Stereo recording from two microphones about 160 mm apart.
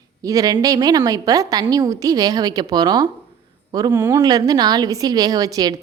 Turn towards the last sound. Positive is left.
turn(degrees=-25)  # may be behind; listen again after turning